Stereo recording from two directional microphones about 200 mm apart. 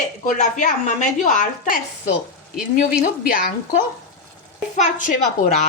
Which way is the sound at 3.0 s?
40° left (ahead or behind).